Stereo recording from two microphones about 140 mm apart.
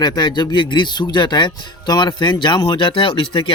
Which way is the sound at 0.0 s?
30° left (ahead or behind).